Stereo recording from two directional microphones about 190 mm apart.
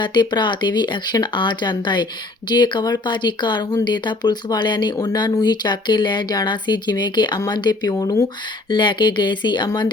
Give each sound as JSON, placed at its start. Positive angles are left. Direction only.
{"t": 0.0, "sound": "speech", "side_deg": 25}